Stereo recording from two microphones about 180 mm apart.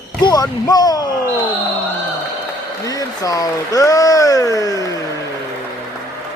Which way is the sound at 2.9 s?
20° left (ahead or behind).